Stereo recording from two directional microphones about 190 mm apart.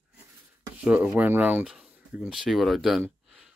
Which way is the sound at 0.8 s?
5° right (ahead or behind).